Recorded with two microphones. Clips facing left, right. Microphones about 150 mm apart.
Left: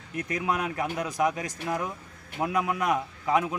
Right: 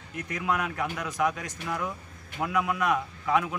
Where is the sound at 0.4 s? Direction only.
20° left (ahead or behind).